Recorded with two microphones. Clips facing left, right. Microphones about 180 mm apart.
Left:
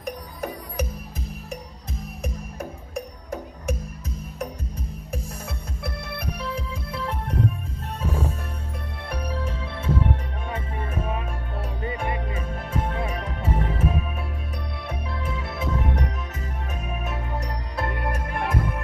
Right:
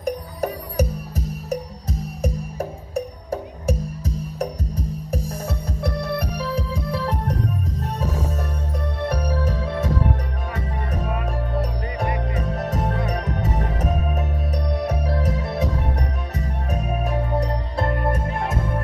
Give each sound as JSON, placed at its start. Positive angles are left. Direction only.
{"t": 0.0, "sound": "music", "side_deg": -35}